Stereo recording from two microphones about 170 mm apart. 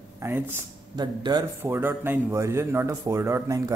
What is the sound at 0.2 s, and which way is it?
Speech, 15° right (ahead or behind).